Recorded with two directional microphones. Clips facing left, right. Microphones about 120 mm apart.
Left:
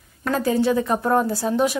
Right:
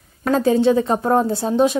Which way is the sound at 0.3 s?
25° right (ahead or behind).